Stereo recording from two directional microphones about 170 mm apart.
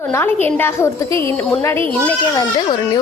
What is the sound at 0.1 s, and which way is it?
A woman's voice, 10° left (ahead or behind).